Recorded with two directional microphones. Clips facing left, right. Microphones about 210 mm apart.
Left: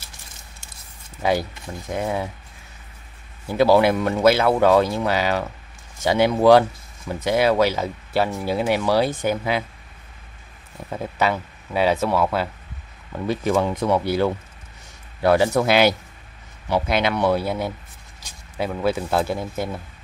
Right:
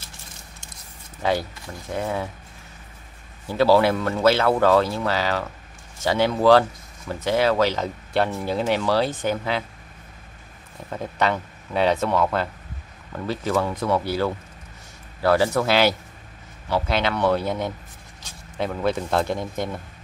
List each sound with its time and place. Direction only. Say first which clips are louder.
1.2 s speech: left 2 dB; 15° left (ahead or behind)
3.4 s speech: left 1 dB; 15° left (ahead or behind)
10.9 s speech: left 1 dB; 5° left (ahead or behind)